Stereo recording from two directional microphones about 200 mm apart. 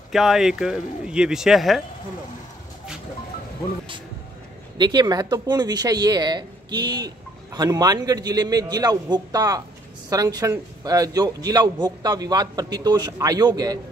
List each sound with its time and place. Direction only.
0.1 s speech: centre (ahead or behind)
4.7 s a man's voice: 20° right (ahead or behind)